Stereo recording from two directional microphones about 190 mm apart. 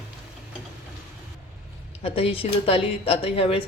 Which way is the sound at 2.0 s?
30° left (ahead or behind).